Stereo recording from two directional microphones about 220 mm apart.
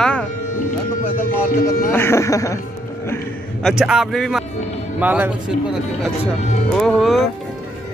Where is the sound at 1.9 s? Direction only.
10° left (ahead or behind).